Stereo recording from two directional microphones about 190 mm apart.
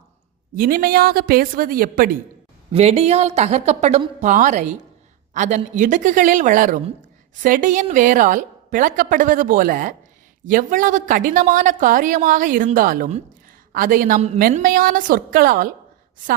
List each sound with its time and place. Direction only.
0.5 s a woman's voice: 50° right (ahead or behind)
2.7 s a woman's voice: 30° right (ahead or behind)